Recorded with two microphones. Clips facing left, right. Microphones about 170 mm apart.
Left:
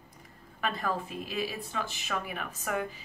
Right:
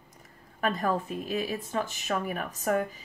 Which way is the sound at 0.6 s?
45° right (ahead or behind).